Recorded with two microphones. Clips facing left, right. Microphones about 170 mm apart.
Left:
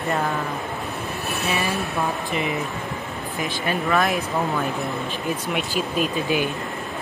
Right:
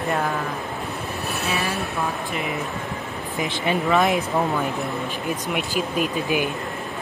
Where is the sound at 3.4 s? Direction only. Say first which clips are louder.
Right 2 dB; 20° right (ahead or behind).